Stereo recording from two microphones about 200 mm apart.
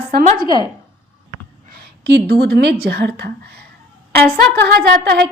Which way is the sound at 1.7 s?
50° right (ahead or behind).